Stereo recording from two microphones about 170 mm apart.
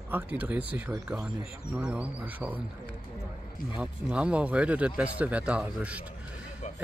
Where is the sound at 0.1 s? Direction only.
10° right (ahead or behind).